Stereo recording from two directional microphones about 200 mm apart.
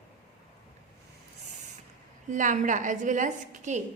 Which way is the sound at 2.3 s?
40° right (ahead or behind).